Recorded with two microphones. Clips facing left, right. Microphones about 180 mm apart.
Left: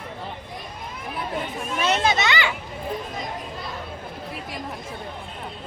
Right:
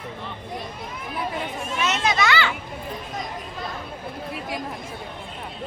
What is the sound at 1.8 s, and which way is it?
Speech, 30° left (ahead or behind).